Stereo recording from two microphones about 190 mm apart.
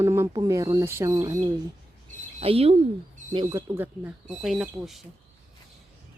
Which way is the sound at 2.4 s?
30° right (ahead or behind).